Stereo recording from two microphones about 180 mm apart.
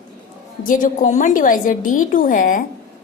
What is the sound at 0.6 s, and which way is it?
A woman's voice, 50° left (ahead or behind).